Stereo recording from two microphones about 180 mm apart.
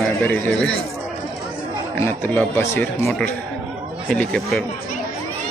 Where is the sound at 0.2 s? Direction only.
10° left (ahead or behind).